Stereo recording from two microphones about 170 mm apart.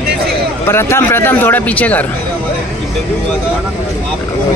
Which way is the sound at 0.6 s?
15° left (ahead or behind).